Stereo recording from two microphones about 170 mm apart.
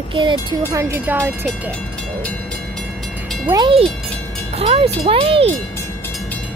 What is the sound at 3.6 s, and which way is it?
Speech, 30° right (ahead or behind).